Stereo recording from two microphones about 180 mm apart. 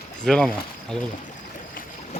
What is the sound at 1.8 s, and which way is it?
Boat, 50° left (ahead or behind).